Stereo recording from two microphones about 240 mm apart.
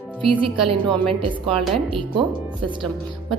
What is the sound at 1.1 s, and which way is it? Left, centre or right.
Speech, centre.